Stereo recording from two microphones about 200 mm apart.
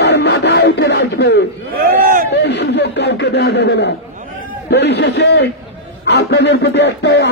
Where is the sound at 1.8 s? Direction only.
45° right (ahead or behind).